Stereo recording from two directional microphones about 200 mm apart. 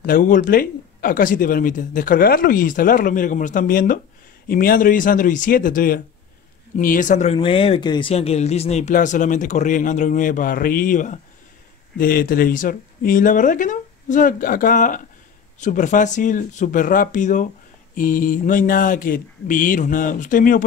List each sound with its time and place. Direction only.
0.0 s speech: 40° left (ahead or behind)
7.3 s speech: 25° left (ahead or behind); by 20.6 s 40° left (ahead or behind)